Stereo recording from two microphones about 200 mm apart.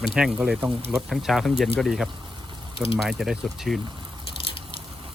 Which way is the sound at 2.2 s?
25° right (ahead or behind).